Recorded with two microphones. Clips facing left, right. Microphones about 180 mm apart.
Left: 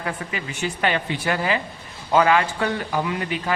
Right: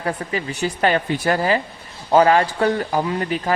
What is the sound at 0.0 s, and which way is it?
A man's voice, 35° right (ahead or behind).